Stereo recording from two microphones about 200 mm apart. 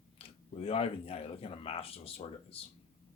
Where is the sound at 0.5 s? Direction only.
30° left (ahead or behind).